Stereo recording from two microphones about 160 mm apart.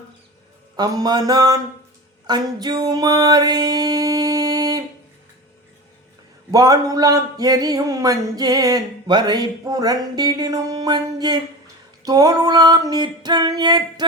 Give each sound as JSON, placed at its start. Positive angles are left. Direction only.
{"t": 0.8, "sound": "speech", "side_deg": -25}
{"t": 2.2, "sound": "a sound", "side_deg": -25}
{"t": 6.5, "sound": "speech", "side_deg": -25}